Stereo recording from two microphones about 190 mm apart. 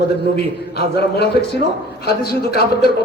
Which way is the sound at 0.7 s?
60° left (ahead or behind).